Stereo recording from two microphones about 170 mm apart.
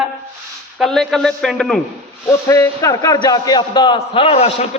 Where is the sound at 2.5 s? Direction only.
20° left (ahead or behind); by 4.5 s 35° left (ahead or behind).